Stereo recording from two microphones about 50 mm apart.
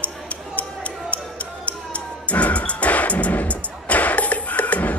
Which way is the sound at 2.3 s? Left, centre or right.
Left.